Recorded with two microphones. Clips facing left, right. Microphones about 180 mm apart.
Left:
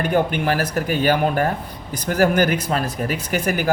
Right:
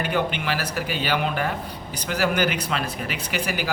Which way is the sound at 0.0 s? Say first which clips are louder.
Left 5 dB; 45° left (ahead or behind).